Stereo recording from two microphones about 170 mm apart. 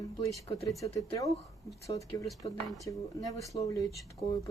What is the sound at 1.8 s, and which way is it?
Speech, 20° left (ahead or behind).